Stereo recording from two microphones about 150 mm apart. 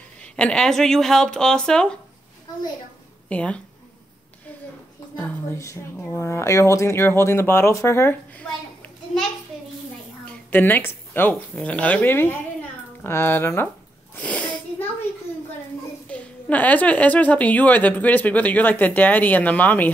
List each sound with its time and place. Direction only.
0.2 s speech: 5° left (ahead or behind)
3.3 s a woman's voice: 10° left (ahead or behind)
5.1 s a woman's voice: 10° left (ahead or behind)
10.2 s a woman's voice: 10° left (ahead or behind)
14.1 s a sound: 10° left (ahead or behind)
16.1 s a woman's voice: 10° left (ahead or behind)